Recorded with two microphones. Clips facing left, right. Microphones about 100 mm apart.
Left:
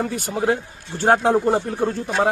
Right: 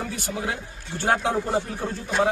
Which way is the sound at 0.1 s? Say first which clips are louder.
Left 8 dB; 45° left (ahead or behind).